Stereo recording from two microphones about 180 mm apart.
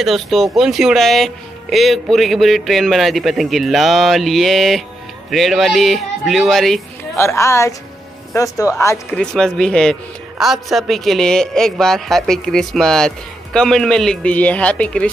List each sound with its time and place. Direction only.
0.0 s speech: centre (ahead or behind)
7.2 s speech: 15° left (ahead or behind)
9.1 s speech: 5° left (ahead or behind)